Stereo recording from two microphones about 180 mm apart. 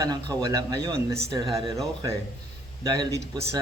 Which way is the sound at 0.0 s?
20° right (ahead or behind).